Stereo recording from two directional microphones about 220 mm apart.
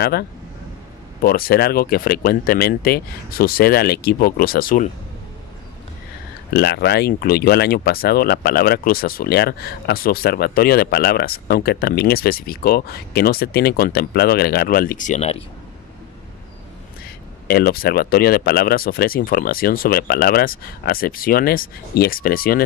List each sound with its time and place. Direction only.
0.0 s speech: 45° left (ahead or behind)
6.5 s speech: 50° left (ahead or behind); by 15.4 s 30° left (ahead or behind)
17.5 s speech: 45° left (ahead or behind)